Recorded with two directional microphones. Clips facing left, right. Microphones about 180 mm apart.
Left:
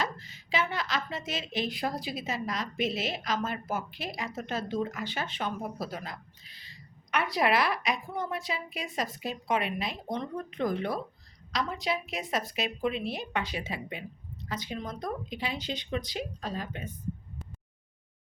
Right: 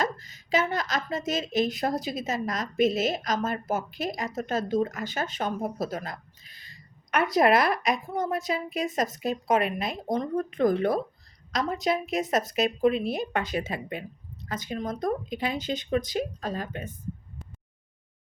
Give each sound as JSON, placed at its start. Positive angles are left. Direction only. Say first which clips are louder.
{"t": 0.0, "sound": "a woman's voice", "louder": "right 5 dB", "side_deg": -45}